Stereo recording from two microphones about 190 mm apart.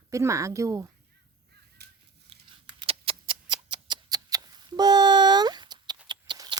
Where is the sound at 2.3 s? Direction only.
30° right (ahead or behind).